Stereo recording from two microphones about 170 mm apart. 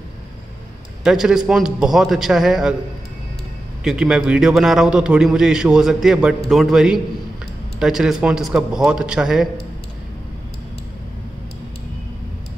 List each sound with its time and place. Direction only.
1.0 s a man's voice: 5° right (ahead or behind)
3.8 s a man's voice: 5° right (ahead or behind)